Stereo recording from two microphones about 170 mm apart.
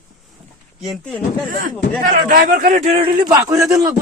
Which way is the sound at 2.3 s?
55° right (ahead or behind).